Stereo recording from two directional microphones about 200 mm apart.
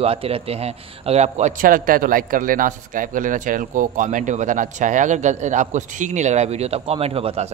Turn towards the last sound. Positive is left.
turn(degrees=-30)  # may be behind; listen again after turning